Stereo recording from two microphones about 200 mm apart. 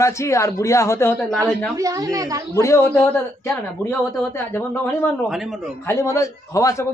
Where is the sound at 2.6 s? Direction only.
10° left (ahead or behind).